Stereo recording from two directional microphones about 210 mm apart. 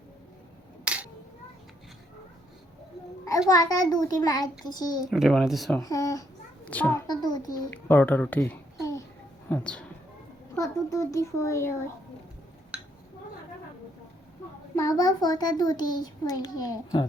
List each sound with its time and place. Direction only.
0.9 s a sound: 5° right (ahead or behind)
3.5 s a child's voice: 15° left (ahead or behind)
5.1 s speech: centre (ahead or behind)
5.8 s a child's voice: 15° left (ahead or behind)
7.1 s a child's voice: 20° left (ahead or behind)
10.5 s a child's voice: 15° left (ahead or behind)
14.8 s a child's voice: 15° left (ahead or behind)